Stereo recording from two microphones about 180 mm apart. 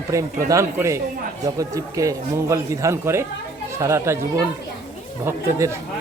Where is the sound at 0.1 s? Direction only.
15° right (ahead or behind).